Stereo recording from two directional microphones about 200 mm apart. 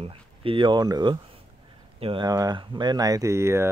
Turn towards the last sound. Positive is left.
turn(degrees=-15)  # may be behind; listen again after turning